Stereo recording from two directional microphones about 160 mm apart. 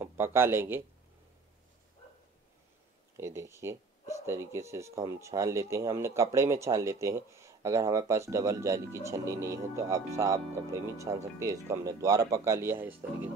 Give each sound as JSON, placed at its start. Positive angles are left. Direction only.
{"t": 0.0, "sound": "speech", "side_deg": -15}
{"t": 3.2, "sound": "speech", "side_deg": -15}